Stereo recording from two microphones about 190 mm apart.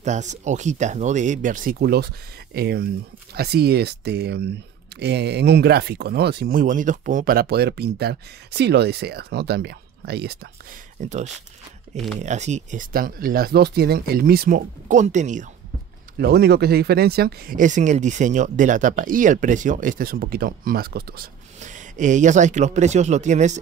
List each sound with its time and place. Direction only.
0.0 s speech: 40° right (ahead or behind); by 10.5 s 60° right (ahead or behind)
11.0 s speech: 40° right (ahead or behind)
16.2 s speech: 55° right (ahead or behind)
21.5 s speech: 40° right (ahead or behind)